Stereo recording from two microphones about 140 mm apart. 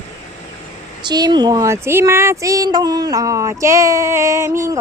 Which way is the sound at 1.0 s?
30° right (ahead or behind).